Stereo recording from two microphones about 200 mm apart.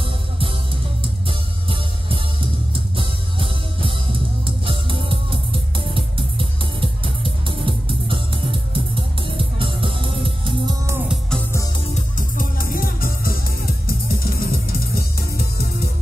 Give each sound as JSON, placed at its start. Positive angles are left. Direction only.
{"t": 2.7, "sound": "music", "side_deg": -25}
{"t": 11.2, "sound": "music", "side_deg": 5}
{"t": 11.9, "sound": "music", "side_deg": 40}